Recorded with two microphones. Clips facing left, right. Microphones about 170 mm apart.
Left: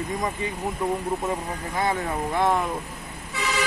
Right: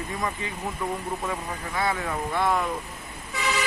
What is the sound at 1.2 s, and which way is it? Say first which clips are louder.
Speech: left 3 dB; 20° left (ahead or behind).